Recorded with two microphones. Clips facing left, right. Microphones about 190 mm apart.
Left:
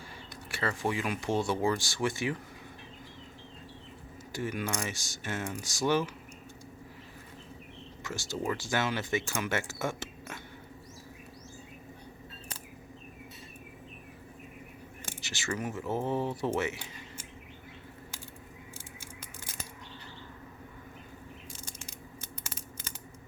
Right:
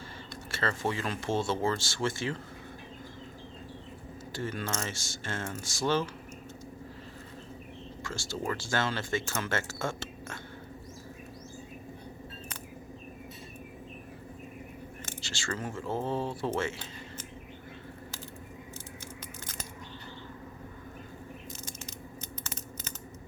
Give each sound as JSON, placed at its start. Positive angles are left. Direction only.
{"t": 0.5, "sound": "speech", "side_deg": 15}
{"t": 4.3, "sound": "speech", "side_deg": 15}
{"t": 8.0, "sound": "speech", "side_deg": 15}
{"t": 15.2, "sound": "speech", "side_deg": 20}